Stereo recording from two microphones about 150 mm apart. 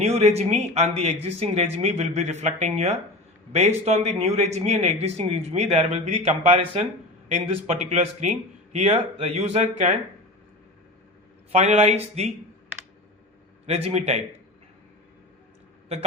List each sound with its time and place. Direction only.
0.0 s speech: 45° right (ahead or behind)
11.5 s speech: 45° right (ahead or behind)
13.7 s speech: 45° right (ahead or behind)